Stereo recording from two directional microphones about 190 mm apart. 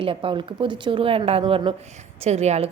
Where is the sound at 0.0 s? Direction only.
30° right (ahead or behind).